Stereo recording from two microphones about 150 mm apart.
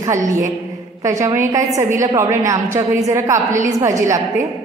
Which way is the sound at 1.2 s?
20° right (ahead or behind).